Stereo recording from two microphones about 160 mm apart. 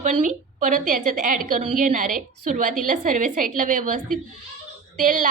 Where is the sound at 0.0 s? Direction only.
50° right (ahead or behind).